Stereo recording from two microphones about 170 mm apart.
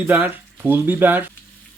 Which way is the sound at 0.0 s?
10° right (ahead or behind).